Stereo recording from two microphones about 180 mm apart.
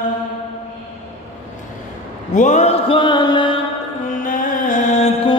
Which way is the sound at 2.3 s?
45° left (ahead or behind).